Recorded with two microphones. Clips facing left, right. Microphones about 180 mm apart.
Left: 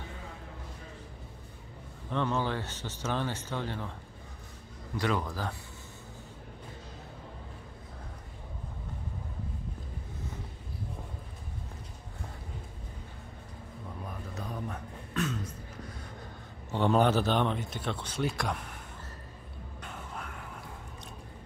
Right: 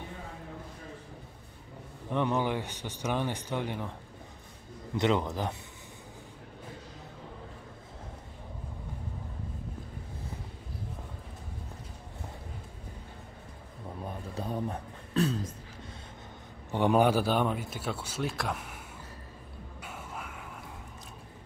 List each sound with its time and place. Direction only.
2.0 s a man's voice: 15° right (ahead or behind)
4.9 s a man's voice: 20° right (ahead or behind)
14.0 s throat clearing: 30° right (ahead or behind)
16.7 s a man's voice: 15° right (ahead or behind)
19.8 s music: 5° right (ahead or behind)